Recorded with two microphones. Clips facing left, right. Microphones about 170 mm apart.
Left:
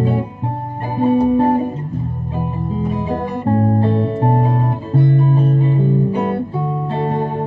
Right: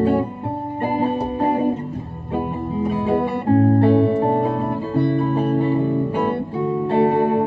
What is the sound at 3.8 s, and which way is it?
Music, 65° right (ahead or behind).